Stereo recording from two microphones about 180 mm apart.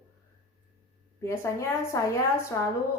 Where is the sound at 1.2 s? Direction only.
15° left (ahead or behind).